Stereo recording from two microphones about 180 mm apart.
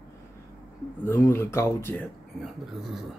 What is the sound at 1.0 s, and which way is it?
Speech, 15° left (ahead or behind).